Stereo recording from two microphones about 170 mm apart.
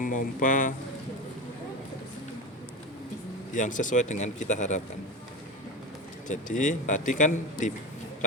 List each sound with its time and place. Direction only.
0.0 s speech: 50° left (ahead or behind)
3.5 s speech: 50° left (ahead or behind)
6.2 s speech: 50° left (ahead or behind)